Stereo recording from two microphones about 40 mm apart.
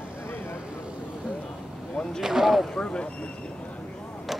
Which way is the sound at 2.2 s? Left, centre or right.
Centre.